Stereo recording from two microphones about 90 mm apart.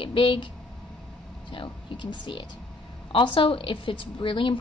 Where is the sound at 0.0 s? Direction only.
75° left (ahead or behind).